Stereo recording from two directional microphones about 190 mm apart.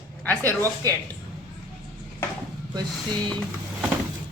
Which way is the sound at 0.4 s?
15° right (ahead or behind).